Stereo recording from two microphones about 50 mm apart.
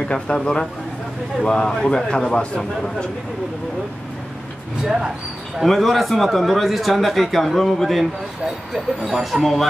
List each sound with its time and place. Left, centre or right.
0.1 s a man's voice: centre
4.8 s speech: centre
5.6 s speech: centre